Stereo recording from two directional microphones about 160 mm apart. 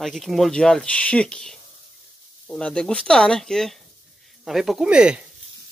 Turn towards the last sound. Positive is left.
turn(degrees=-5)  # may be behind; listen again after turning